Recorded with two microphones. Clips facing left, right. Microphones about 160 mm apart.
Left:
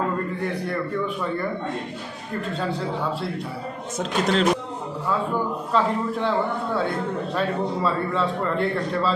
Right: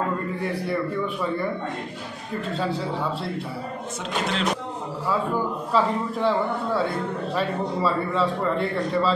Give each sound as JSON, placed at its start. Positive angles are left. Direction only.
{"t": 2.5, "sound": "speech", "side_deg": 0}
{"t": 4.0, "sound": "speech", "side_deg": 40}
{"t": 5.7, "sound": "speech", "side_deg": 0}